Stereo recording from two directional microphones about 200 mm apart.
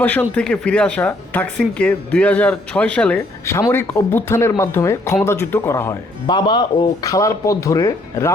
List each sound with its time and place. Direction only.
0.0 s speech: 10° left (ahead or behind)